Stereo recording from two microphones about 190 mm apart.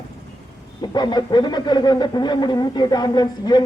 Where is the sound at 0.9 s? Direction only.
20° left (ahead or behind).